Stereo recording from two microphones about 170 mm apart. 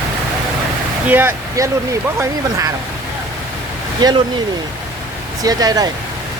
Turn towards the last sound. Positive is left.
turn(degrees=-20)  # may be behind; listen again after turning